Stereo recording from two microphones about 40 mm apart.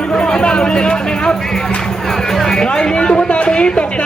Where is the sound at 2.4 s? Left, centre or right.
Centre.